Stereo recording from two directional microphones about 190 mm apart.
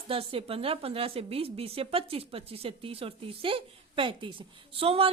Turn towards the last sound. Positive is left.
turn(degrees=-30)  # may be behind; listen again after turning